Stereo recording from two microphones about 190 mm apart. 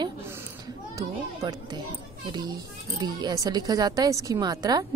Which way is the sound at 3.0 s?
20° right (ahead or behind).